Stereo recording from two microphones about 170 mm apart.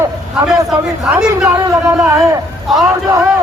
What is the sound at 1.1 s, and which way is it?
A man's voice, 5° right (ahead or behind).